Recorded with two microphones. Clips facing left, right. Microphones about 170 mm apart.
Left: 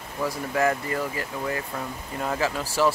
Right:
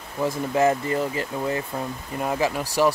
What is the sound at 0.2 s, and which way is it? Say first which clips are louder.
Speech: right 3 dB; 25° right (ahead or behind).